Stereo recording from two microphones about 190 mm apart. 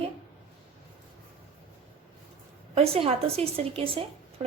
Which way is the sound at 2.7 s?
30° right (ahead or behind).